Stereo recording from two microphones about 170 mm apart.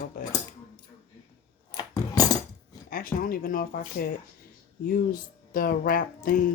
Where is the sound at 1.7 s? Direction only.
25° left (ahead or behind).